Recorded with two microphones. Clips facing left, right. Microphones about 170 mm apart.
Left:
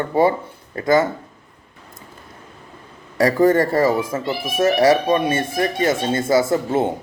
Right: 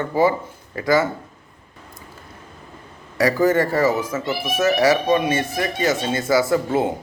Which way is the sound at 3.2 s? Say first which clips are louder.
Left 2 dB; 25° left (ahead or behind).